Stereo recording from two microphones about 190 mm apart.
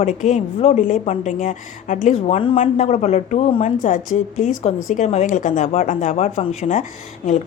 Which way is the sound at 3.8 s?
40° left (ahead or behind).